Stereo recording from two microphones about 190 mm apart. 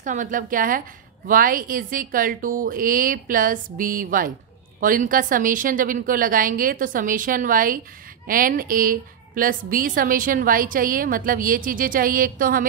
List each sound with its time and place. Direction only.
0.0 s a woman's voice: 40° right (ahead or behind)